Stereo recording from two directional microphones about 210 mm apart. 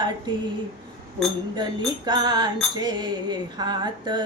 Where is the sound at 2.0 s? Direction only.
20° right (ahead or behind).